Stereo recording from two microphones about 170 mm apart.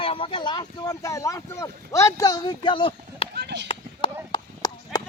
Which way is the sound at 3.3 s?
80° right.